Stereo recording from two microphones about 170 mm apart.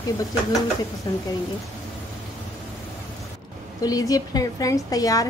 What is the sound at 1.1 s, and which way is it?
Speech, 25° left (ahead or behind).